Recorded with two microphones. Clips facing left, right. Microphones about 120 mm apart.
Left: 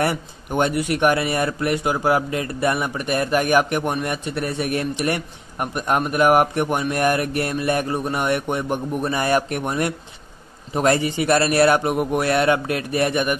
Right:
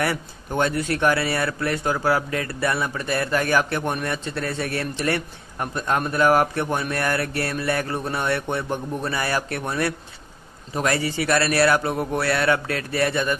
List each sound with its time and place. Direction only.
0.0 s a man's voice: 20° left (ahead or behind)